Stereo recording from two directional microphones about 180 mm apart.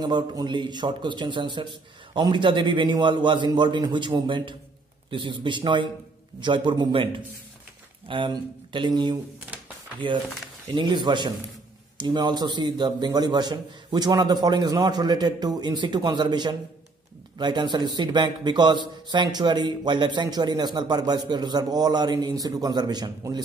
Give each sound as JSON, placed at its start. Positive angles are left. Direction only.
{"t": 0.0, "sound": "a man's voice", "side_deg": -25}
{"t": 8.1, "sound": "a man's voice", "side_deg": -25}
{"t": 10.7, "sound": "a man's voice", "side_deg": -25}